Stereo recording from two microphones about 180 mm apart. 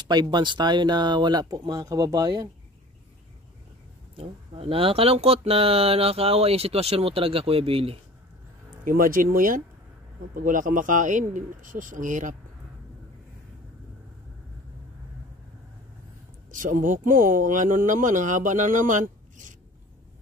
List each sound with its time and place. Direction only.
0.1 s speech: 25° right (ahead or behind)
4.2 s speech: 30° right (ahead or behind)
8.8 s speech: 50° right (ahead or behind)
16.5 s speech: 45° right (ahead or behind)